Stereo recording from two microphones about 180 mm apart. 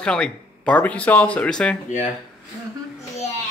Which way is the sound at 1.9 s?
45° left (ahead or behind).